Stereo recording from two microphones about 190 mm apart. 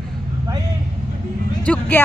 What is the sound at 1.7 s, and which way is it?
Speech, 10° left (ahead or behind).